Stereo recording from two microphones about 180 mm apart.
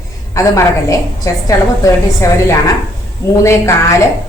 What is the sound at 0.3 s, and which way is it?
A woman's voice, 20° left (ahead or behind).